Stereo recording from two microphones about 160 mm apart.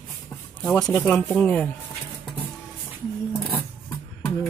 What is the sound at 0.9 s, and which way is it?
Speech, 10° left (ahead or behind).